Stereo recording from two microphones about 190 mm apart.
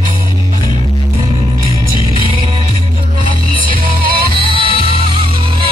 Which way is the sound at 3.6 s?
50° right (ahead or behind).